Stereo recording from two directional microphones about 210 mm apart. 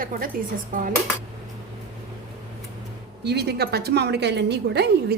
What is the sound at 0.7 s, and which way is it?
Dishes, 40° right (ahead or behind).